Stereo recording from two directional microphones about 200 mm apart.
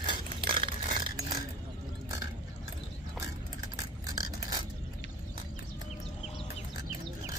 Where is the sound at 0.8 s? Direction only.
45° right (ahead or behind).